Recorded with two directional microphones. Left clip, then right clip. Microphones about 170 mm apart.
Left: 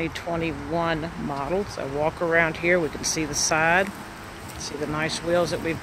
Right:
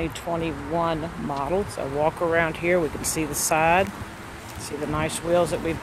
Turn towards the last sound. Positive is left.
turn(degrees=0)  # may be behind; listen again after turning